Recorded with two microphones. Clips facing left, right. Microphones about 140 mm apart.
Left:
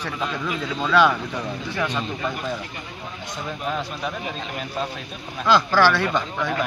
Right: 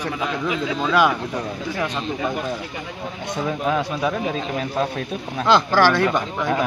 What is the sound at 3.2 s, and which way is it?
A man's voice, 60° right (ahead or behind).